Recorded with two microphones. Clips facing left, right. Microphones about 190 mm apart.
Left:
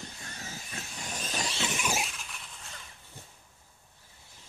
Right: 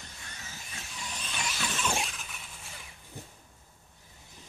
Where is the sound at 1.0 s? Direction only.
45° left (ahead or behind).